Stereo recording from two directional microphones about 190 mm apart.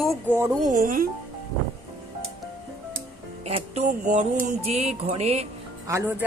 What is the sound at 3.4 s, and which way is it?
Speech, 35° right (ahead or behind).